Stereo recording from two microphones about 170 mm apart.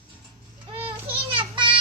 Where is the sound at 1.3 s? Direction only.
30° right (ahead or behind).